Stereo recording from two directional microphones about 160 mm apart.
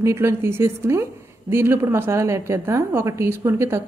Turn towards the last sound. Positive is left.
turn(degrees=-15)  # may be behind; listen again after turning